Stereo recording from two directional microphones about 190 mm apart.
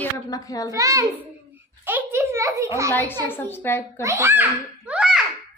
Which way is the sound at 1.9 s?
10° right (ahead or behind).